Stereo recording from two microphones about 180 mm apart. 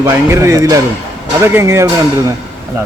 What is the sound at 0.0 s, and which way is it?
Speech, 15° right (ahead or behind).